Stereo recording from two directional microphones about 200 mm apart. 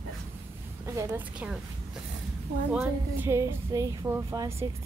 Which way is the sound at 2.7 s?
10° right (ahead or behind).